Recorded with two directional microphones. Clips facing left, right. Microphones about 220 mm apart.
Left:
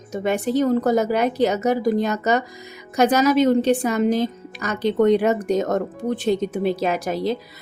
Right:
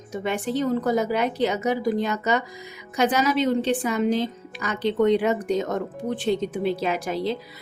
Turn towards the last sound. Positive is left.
turn(degrees=45)  # may be behind; listen again after turning